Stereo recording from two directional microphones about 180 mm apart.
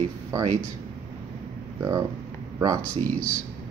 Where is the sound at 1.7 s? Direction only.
20° right (ahead or behind).